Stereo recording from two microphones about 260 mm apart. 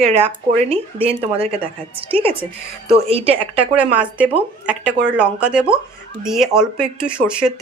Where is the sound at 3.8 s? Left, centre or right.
Centre.